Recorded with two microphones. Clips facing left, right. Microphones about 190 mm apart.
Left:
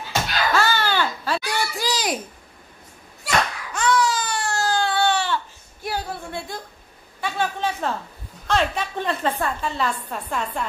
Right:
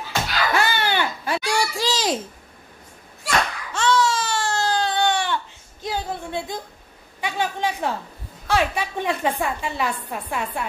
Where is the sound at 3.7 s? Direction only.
25° right (ahead or behind).